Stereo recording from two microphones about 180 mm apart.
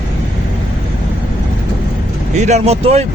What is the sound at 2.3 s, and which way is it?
Speech, 40° right (ahead or behind).